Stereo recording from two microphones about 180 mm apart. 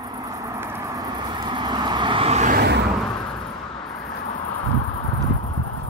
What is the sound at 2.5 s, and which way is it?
Vehicle, 70° right (ahead or behind).